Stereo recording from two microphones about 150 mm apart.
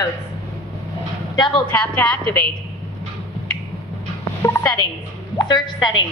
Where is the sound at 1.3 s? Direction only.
30° left (ahead or behind).